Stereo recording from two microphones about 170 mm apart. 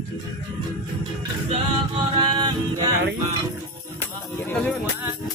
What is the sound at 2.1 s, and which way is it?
Music, 30° right (ahead or behind).